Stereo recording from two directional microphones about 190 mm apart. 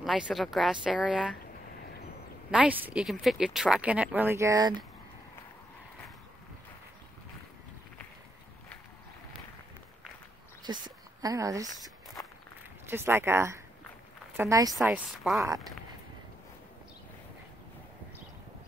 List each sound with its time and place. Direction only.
0.0 s speech: centre (ahead or behind)
2.5 s speech: 5° right (ahead or behind)
10.6 s speech: 20° right (ahead or behind)
12.8 s speech: 10° right (ahead or behind)
14.7 s speech: centre (ahead or behind)